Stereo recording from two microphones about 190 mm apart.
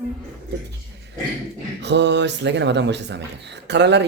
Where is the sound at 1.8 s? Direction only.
65° right (ahead or behind).